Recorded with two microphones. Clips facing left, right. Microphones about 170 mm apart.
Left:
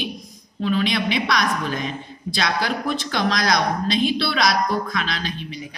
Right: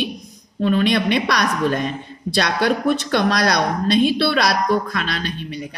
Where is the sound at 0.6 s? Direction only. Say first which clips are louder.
Right 4 dB; 50° right (ahead or behind).